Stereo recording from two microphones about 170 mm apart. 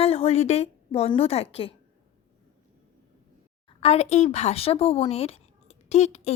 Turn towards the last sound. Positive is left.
turn(degrees=40)  # may be behind; listen again after turning